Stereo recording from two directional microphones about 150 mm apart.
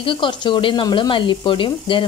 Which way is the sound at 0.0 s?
35° left (ahead or behind).